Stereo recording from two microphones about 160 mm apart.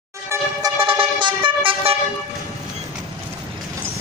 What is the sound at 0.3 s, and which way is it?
Vehicle, 15° right (ahead or behind).